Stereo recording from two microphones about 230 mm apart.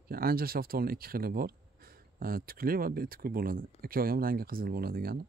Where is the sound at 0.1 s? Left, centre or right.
Right.